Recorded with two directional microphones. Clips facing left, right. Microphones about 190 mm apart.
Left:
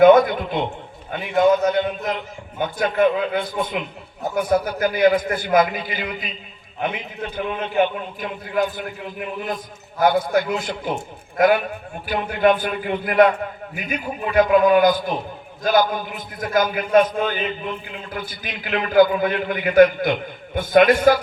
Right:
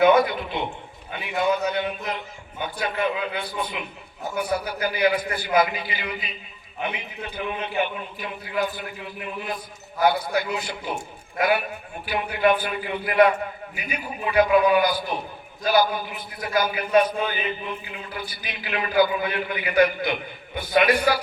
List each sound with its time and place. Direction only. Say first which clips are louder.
0.0 s a man's voice: left 6 dB; 50° left (ahead or behind)